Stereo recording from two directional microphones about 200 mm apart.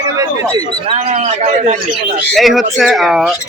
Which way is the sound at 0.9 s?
35° right (ahead or behind).